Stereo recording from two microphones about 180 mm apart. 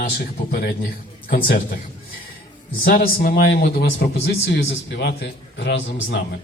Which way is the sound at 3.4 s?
75° left (ahead or behind).